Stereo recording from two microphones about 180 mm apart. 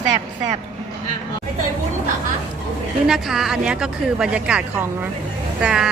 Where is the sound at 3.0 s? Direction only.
Centre (ahead or behind).